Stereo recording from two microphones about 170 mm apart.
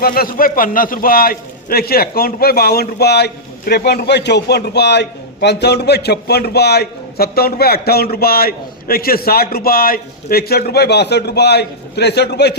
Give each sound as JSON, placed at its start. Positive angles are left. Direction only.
{"t": 0.0, "sound": "a man's voice", "side_deg": 60}